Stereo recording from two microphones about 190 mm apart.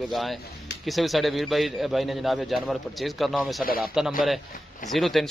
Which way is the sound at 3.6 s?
50° left (ahead or behind).